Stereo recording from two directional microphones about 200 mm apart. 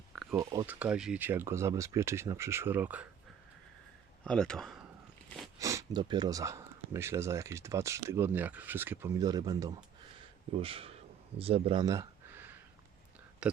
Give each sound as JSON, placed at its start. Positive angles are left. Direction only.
{"t": 0.3, "sound": "speech", "side_deg": -15}
{"t": 4.2, "sound": "speech", "side_deg": 5}
{"t": 5.5, "sound": "speech", "side_deg": -15}
{"t": 13.4, "sound": "a sound", "side_deg": -5}